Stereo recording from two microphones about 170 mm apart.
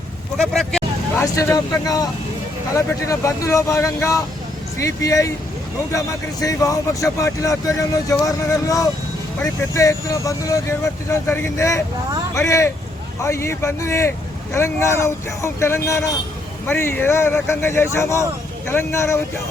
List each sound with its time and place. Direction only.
0.3 s speech: centre (ahead or behind)
1.1 s speech: 15° left (ahead or behind)